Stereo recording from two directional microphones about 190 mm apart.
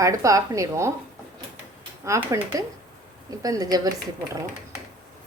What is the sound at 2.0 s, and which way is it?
A woman's voice, 15° right (ahead or behind).